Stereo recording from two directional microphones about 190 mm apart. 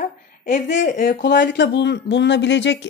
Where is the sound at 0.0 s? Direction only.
45° left (ahead or behind).